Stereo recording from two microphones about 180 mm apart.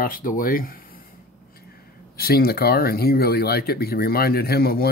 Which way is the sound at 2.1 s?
60° left (ahead or behind).